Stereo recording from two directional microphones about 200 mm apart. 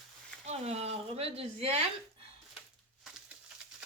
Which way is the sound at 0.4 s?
30° right (ahead or behind).